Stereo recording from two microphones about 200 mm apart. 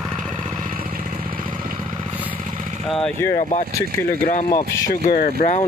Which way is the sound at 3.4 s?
30° left (ahead or behind).